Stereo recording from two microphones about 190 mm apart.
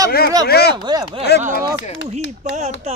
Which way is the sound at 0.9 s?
20° right (ahead or behind).